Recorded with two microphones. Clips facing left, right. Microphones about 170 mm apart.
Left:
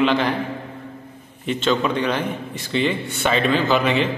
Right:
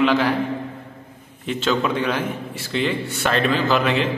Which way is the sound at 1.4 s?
5° right (ahead or behind).